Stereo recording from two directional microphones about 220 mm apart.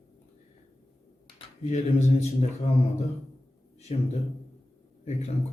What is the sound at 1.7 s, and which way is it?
A man's voice, 30° left (ahead or behind).